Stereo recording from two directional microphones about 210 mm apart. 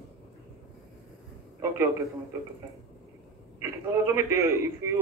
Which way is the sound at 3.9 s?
15° right (ahead or behind).